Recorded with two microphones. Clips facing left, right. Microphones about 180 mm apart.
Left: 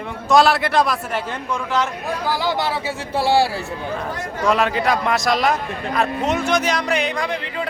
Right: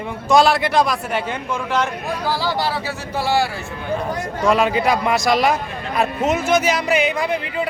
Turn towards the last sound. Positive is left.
turn(degrees=-5)  # may be behind; listen again after turning